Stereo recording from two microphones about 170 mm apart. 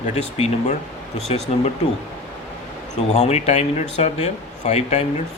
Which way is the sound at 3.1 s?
40° left (ahead or behind).